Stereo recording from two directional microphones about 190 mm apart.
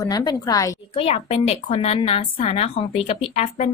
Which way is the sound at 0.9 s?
30° left (ahead or behind).